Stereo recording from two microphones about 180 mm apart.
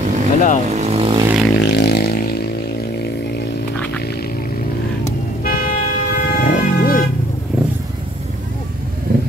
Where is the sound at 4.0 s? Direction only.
60° left (ahead or behind).